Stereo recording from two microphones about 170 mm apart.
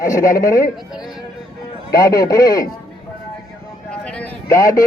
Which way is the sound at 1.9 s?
20° left (ahead or behind).